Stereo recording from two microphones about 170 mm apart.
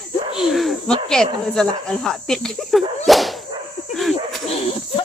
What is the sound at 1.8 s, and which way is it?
Speech, 5° left (ahead or behind).